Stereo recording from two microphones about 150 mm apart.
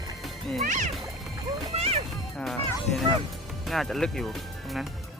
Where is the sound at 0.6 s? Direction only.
55° right (ahead or behind).